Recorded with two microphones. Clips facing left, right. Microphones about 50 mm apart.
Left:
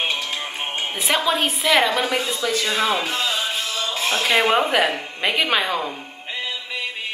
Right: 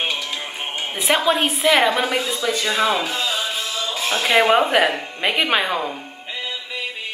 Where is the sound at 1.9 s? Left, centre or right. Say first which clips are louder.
Right 1 dB; right.